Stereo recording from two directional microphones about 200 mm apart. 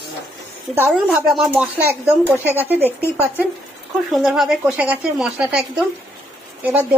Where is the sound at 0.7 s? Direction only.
10° right (ahead or behind).